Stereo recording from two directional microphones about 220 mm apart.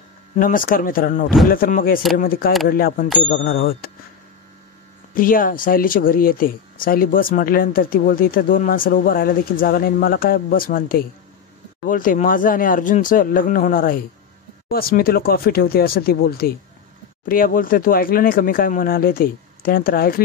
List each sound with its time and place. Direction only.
0.4 s speech: 40° left (ahead or behind)
5.1 s speech: 40° left (ahead or behind)